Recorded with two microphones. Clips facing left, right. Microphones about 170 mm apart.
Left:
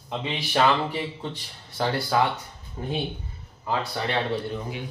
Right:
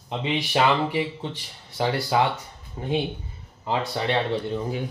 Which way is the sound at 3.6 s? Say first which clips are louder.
Right 2 dB; 20° right (ahead or behind).